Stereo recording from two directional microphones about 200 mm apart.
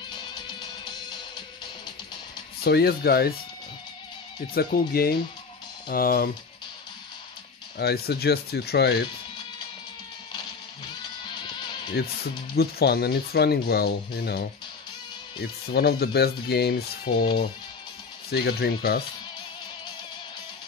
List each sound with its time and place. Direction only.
2.6 s speech: 50° left (ahead or behind)
4.6 s speech: 50° left (ahead or behind)
7.7 s speech: 55° left (ahead or behind)
12.0 s speech: 50° left (ahead or behind)
15.7 s speech: 55° left (ahead or behind)